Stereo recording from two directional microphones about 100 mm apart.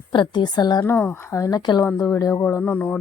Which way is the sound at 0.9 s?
20° left (ahead or behind).